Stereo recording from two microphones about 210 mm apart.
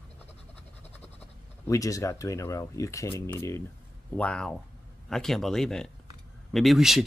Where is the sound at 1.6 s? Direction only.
15° left (ahead or behind).